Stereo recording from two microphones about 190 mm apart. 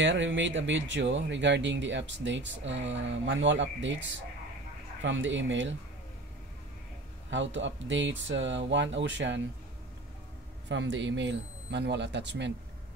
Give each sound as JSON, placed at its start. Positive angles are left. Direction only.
{"t": 0.0, "sound": "speech", "side_deg": -70}
{"t": 7.2, "sound": "speech", "side_deg": -75}
{"t": 10.7, "sound": "speech", "side_deg": -75}